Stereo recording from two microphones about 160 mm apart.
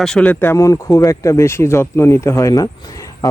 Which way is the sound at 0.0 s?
5° left (ahead or behind).